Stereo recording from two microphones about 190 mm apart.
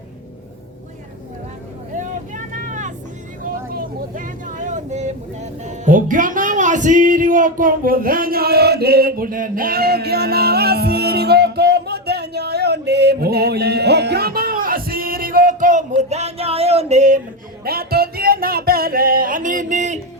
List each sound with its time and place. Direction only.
2.0 s vehicle: 40° right (ahead or behind)
16.0 s a sound: 35° right (ahead or behind)
17.6 s music: 55° right (ahead or behind)